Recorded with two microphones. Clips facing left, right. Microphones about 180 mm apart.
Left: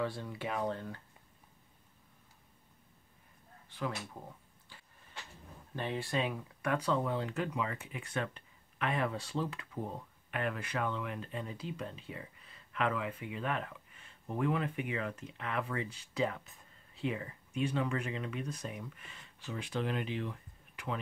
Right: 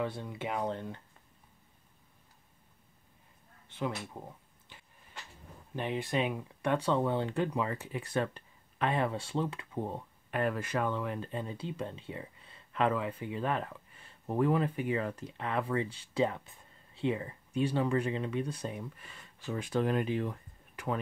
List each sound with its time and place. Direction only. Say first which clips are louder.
0.0 s speech: right 1 dB; 20° right (ahead or behind)
3.6 s speech: right 3 dB; 20° right (ahead or behind)
4.7 s vehicle: right 2 dB; 20° right (ahead or behind)
5.8 s speech: right 3 dB; 20° right (ahead or behind)
10.3 s speech: right 5 dB; 40° right (ahead or behind)
19.6 s speech: right 6 dB; 45° right (ahead or behind)